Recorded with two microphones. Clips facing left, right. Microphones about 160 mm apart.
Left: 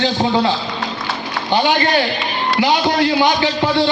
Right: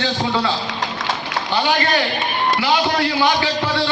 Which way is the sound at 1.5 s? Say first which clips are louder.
Left 4 dB; 20° left (ahead or behind).